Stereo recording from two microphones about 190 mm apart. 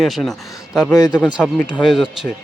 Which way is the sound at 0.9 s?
20° left (ahead or behind).